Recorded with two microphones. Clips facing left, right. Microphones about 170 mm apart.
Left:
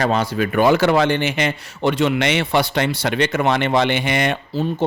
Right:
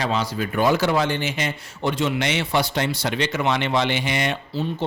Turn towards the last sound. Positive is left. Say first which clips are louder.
# left 4 dB
turn(degrees=55)  # may be behind; listen again after turning